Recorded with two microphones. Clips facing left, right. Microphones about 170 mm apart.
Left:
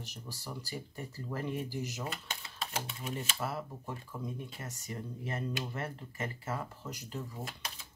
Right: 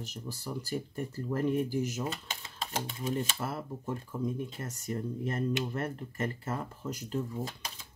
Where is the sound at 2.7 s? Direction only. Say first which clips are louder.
Right 6 dB; 35° right (ahead or behind).